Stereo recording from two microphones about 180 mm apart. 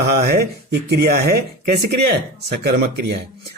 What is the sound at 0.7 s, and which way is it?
Speech, 60° right (ahead or behind).